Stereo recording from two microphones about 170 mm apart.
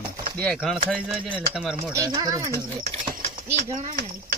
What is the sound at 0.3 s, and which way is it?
Speech, 5° left (ahead or behind).